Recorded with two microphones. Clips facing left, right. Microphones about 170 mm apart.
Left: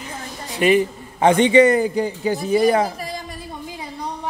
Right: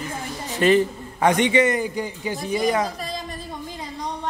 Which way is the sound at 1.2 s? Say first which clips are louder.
Left 5 dB; 30° left (ahead or behind).